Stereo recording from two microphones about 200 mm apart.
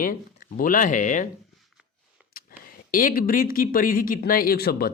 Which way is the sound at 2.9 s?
45° left (ahead or behind).